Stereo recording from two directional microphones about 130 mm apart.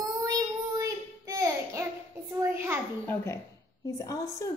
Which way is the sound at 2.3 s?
20° right (ahead or behind).